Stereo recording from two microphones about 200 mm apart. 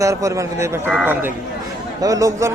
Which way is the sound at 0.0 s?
15° right (ahead or behind).